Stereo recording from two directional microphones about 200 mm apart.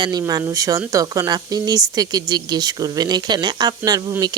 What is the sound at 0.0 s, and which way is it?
Speech, 20° right (ahead or behind).